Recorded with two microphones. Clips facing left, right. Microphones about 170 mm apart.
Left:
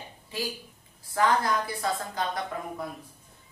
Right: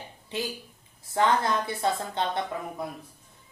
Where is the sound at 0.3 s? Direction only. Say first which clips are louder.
Right 1 dB; 25° right (ahead or behind).